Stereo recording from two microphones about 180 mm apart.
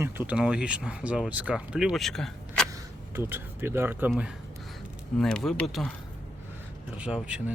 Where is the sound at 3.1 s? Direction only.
15° right (ahead or behind); by 5.9 s 5° left (ahead or behind).